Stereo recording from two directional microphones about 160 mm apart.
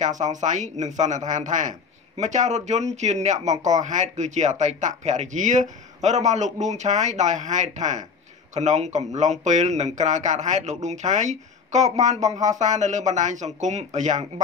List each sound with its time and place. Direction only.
0.2 s speech: 50° right (ahead or behind)